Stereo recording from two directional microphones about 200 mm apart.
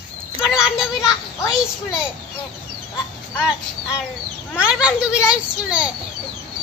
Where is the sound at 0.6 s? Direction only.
5° right (ahead or behind).